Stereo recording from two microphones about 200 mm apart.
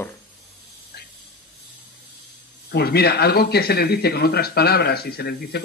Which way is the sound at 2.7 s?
55° left (ahead or behind).